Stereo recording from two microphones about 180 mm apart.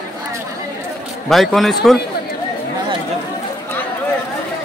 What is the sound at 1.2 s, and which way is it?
Speech, centre (ahead or behind).